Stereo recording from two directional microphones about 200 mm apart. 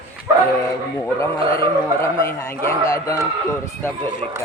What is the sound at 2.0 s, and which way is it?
A man's voice, 15° left (ahead or behind).